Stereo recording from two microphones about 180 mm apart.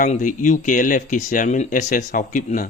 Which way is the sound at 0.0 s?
45° left (ahead or behind).